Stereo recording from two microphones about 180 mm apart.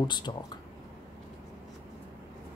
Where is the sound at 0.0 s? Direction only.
25° left (ahead or behind).